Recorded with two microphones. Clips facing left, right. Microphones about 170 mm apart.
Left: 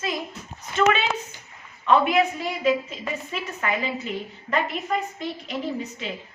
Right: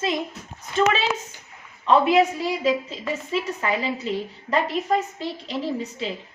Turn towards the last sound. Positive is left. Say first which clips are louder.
# right 2 dB
turn(degrees=-30)  # may be behind; listen again after turning